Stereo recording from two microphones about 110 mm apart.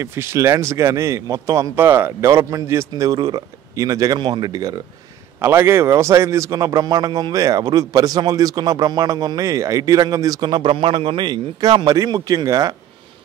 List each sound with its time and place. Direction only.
0.0 s speech: 25° right (ahead or behind)
3.1 s speech: 35° right (ahead or behind)
5.4 s speech: 20° right (ahead or behind)